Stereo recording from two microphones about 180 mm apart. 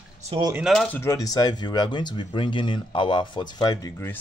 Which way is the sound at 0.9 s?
15° left (ahead or behind).